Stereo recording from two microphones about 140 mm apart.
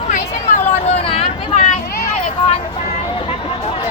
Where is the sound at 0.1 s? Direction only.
60° left (ahead or behind); by 1.3 s 45° left (ahead or behind).